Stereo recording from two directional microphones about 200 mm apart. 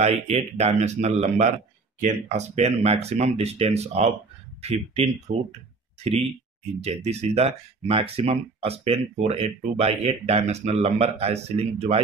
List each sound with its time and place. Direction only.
0.0 s speech: 35° right (ahead or behind)
6.8 s speech: 30° right (ahead or behind)